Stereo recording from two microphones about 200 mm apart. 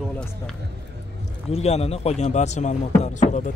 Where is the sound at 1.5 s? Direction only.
30° left (ahead or behind).